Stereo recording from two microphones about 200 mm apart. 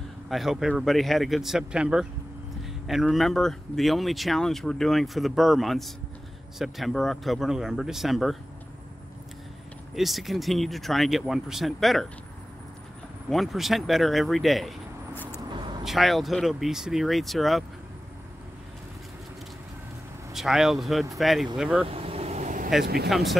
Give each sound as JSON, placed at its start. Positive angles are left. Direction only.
{"t": 0.3, "sound": "speech", "side_deg": 0}
{"t": 9.9, "sound": "speech", "side_deg": 0}
{"t": 13.3, "sound": "speech", "side_deg": 0}
{"t": 20.3, "sound": "speech", "side_deg": 0}
{"t": 21.8, "sound": "vehicle", "side_deg": -30}
{"t": 23.0, "sound": "speech", "side_deg": 0}